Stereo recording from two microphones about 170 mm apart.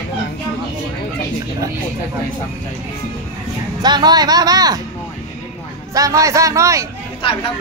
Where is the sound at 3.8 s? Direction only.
25° right (ahead or behind).